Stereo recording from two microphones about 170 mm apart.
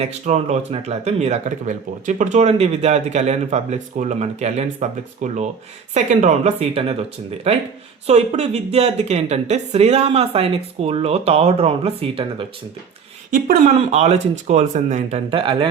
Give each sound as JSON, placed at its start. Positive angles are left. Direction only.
{"t": 0.0, "sound": "speech", "side_deg": -40}
{"t": 13.9, "sound": "speech", "side_deg": -40}